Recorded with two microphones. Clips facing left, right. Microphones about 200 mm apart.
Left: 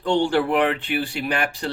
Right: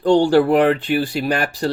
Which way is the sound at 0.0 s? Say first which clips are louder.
Right 7 dB; 40° right (ahead or behind).